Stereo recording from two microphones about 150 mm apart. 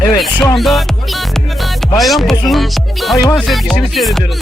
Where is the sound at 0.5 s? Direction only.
Centre (ahead or behind).